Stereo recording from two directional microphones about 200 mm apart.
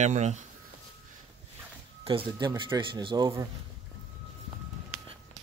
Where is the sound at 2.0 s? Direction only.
25° right (ahead or behind).